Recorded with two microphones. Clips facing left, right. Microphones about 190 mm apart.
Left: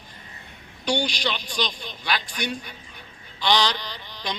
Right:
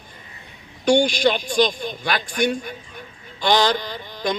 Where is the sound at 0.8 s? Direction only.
50° right (ahead or behind).